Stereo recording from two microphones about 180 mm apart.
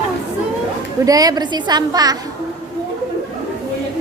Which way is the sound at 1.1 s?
20° right (ahead or behind).